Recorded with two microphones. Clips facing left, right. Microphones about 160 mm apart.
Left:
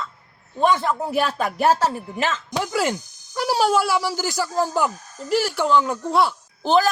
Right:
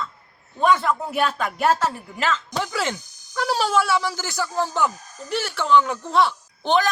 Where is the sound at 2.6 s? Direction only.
10° left (ahead or behind).